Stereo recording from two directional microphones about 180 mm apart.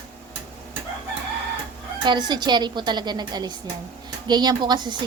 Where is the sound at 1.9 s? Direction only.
25° right (ahead or behind).